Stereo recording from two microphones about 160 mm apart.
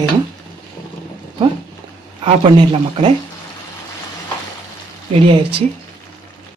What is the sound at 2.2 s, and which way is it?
Speech, 30° right (ahead or behind).